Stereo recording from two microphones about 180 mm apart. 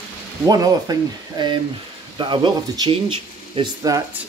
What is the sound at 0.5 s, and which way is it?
Speech, 20° right (ahead or behind).